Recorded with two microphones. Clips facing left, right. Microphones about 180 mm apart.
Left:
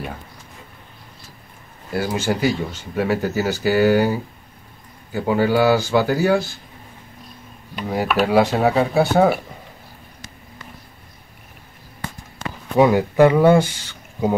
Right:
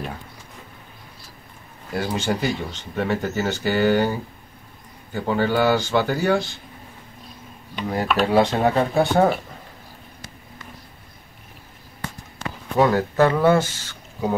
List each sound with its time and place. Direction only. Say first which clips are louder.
1.9 s speech: left 2 dB; 5° left (ahead or behind)
7.7 s speech: left 2 dB; 5° left (ahead or behind)
12.7 s speech: left 4 dB; 15° left (ahead or behind)